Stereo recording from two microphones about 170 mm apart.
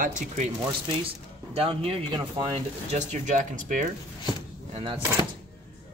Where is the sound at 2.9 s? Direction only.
45° right (ahead or behind).